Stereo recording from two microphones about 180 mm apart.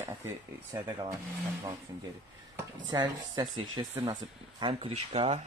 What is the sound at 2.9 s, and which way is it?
Speech, 20° right (ahead or behind).